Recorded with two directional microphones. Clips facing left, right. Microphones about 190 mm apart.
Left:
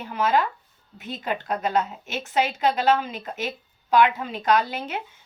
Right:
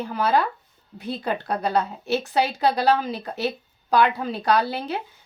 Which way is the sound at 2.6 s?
35° right (ahead or behind).